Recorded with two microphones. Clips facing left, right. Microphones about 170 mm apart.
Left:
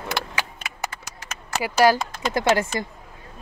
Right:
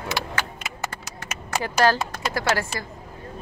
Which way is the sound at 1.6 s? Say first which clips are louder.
Left 3 dB; 10° left (ahead or behind).